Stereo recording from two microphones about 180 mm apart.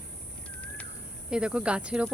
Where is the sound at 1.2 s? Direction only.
5° right (ahead or behind).